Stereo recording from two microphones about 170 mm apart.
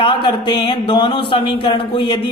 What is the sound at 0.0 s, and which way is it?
Speech, 30° left (ahead or behind).